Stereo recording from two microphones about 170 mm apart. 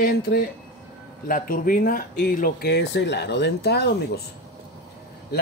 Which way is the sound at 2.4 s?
70° left (ahead or behind).